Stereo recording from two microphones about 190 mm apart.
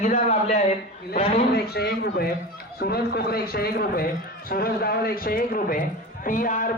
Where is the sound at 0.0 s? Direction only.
35° left (ahead or behind).